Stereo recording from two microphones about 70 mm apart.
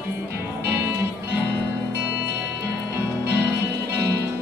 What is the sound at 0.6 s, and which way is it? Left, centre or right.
Music, right.